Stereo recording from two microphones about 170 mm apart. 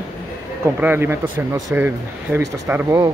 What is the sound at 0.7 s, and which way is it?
Speech, 10° right (ahead or behind).